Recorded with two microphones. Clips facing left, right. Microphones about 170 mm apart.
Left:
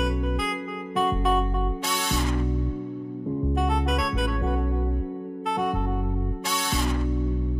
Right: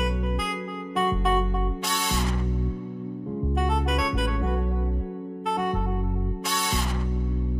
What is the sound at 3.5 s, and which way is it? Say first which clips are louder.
Music: right 2 dB; centre (ahead or behind).